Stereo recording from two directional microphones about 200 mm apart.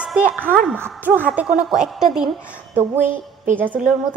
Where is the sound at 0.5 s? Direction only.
5° left (ahead or behind).